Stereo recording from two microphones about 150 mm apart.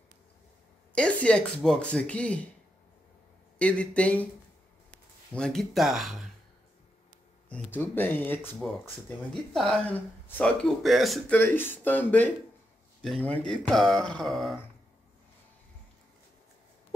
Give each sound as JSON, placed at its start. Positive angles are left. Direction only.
{"t": 0.9, "sound": "speech", "side_deg": 5}
{"t": 3.5, "sound": "speech", "side_deg": 10}
{"t": 5.3, "sound": "speech", "side_deg": 5}
{"t": 7.4, "sound": "speech", "side_deg": 10}
{"t": 8.5, "sound": "speech", "side_deg": 0}
{"t": 11.3, "sound": "speech", "side_deg": 15}
{"t": 13.0, "sound": "speech", "side_deg": 0}